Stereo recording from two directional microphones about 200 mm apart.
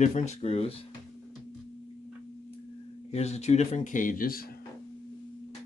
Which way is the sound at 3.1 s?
35° left (ahead or behind).